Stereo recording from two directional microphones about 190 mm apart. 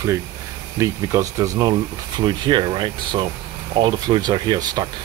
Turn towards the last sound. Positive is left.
turn(degrees=-20)  # may be behind; listen again after turning